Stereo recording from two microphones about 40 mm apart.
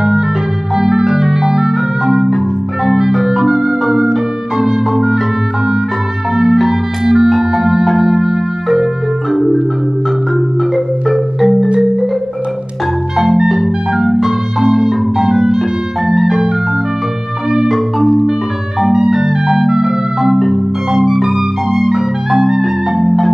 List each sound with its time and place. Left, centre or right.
1.4 s music: centre
2.2 s marimba: centre
4.6 s music: centre
6.3 s music: centre
11.1 s marimba: centre
13.5 s music: centre
17.6 s marimba: centre
19.0 s music: centre
21.3 s music: centre
21.9 s music: centre